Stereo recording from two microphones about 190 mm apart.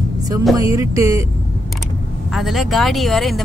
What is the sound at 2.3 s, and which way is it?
Speech, centre (ahead or behind).